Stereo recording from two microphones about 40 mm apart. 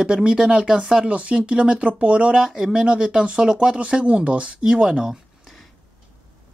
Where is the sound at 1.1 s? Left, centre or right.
Right.